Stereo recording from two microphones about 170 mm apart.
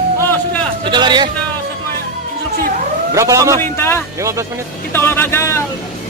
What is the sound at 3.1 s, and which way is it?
Speech, 20° right (ahead or behind).